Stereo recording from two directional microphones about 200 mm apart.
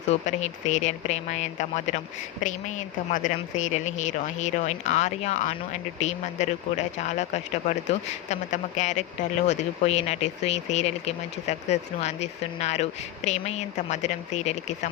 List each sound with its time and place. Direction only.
0.1 s speech: 35° left (ahead or behind)